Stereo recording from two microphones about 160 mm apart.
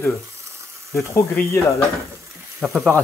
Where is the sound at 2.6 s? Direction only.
Centre (ahead or behind).